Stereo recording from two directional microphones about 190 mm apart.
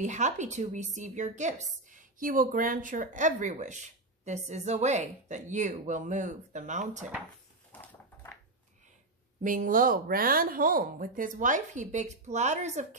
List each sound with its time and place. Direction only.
0.0 s a woman's voice: 40° right (ahead or behind)
7.8 s a sound: 10° left (ahead or behind)
9.4 s speech: 45° right (ahead or behind)